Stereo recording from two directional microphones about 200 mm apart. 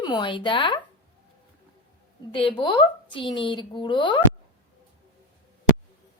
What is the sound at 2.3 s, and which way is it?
Speech, 25° left (ahead or behind).